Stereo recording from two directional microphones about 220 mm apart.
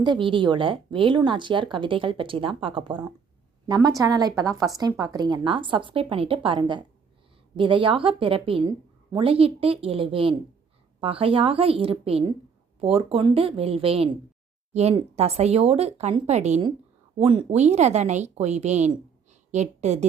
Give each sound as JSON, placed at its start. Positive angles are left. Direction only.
{"t": 0.0, "sound": "a woman's voice", "side_deg": -20}